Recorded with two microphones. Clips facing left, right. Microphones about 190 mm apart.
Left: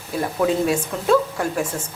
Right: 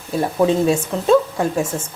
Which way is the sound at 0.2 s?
25° right (ahead or behind).